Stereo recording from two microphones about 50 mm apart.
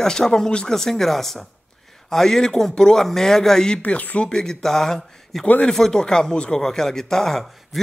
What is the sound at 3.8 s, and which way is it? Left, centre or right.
Speech, left.